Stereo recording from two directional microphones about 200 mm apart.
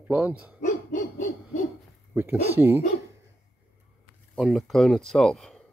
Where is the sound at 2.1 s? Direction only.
10° right (ahead or behind).